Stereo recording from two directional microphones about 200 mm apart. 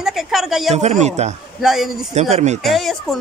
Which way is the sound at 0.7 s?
35° right (ahead or behind).